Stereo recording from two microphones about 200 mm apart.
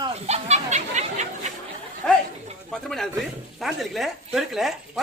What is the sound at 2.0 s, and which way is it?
Speech, 5° left (ahead or behind).